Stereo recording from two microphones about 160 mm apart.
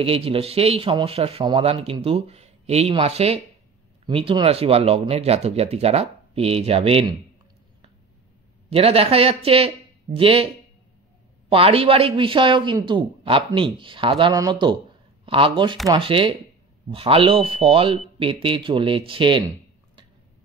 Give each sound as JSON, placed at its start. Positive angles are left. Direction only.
{"t": 0.0, "sound": "speech", "side_deg": -35}
{"t": 8.6, "sound": "speech", "side_deg": -35}
{"t": 11.5, "sound": "speech", "side_deg": -35}